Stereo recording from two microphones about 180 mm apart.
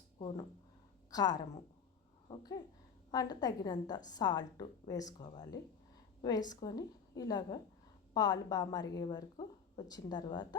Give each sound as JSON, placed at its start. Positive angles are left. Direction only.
{"t": 1.1, "sound": "a woman's voice", "side_deg": 20}